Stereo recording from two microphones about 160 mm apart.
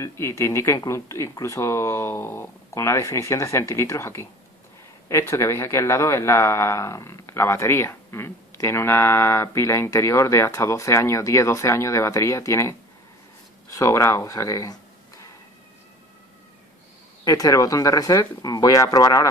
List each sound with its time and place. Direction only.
0.0 s speech: 20° left (ahead or behind)
17.2 s speech: 20° left (ahead or behind)